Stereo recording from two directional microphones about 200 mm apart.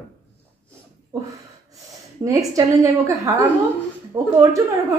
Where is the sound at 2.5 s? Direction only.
15° right (ahead or behind).